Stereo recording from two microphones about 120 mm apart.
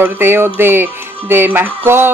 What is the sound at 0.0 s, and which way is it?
Music, 20° right (ahead or behind).